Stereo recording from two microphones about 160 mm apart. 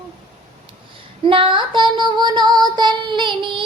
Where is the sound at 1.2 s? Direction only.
30° right (ahead or behind).